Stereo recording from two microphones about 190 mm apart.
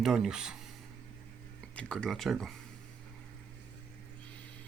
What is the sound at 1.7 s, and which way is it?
Speech, 5° left (ahead or behind).